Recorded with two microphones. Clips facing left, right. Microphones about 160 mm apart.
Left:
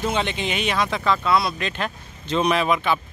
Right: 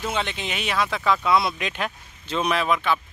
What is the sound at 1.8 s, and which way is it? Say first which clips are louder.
Speech: left 1 dB; 5° right (ahead or behind).